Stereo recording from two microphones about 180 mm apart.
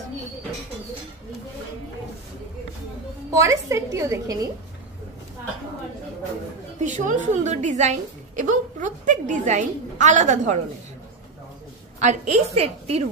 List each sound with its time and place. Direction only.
3.3 s a woman's voice: 15° right (ahead or behind)
6.8 s a woman's voice: 45° right (ahead or behind)
12.0 s a woman's voice: 40° right (ahead or behind)